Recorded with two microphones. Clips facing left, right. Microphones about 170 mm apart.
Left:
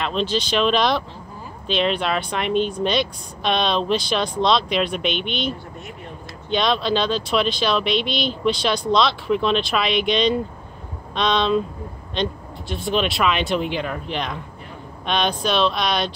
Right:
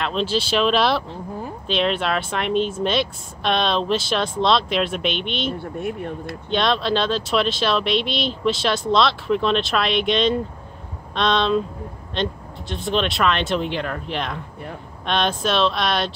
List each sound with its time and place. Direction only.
0.0 s speech: centre (ahead or behind)
5.6 s speech: 60° right (ahead or behind)
6.5 s speech: centre (ahead or behind)